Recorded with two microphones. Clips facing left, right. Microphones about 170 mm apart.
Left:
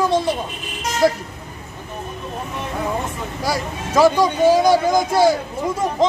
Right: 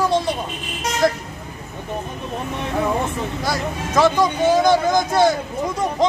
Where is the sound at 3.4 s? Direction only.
10° left (ahead or behind).